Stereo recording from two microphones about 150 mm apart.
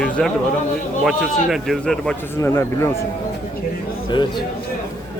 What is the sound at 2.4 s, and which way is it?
Speech, 15° left (ahead or behind).